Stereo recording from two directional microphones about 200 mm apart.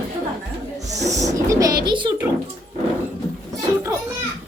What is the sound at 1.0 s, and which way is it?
A woman's voice, 15° right (ahead or behind).